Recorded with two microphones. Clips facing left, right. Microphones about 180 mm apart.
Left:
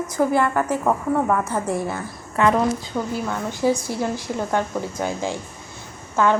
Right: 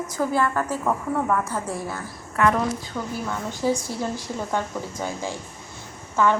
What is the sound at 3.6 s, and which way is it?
A woman's voice, 10° left (ahead or behind).